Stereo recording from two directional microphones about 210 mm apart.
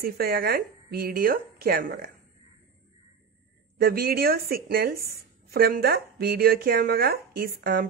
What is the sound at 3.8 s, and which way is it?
A woman's voice, 45° right (ahead or behind).